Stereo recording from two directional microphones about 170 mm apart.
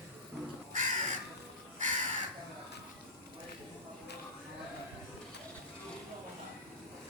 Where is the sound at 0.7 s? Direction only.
50° right (ahead or behind).